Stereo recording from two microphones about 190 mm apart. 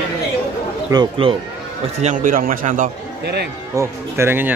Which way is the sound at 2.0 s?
45° right (ahead or behind).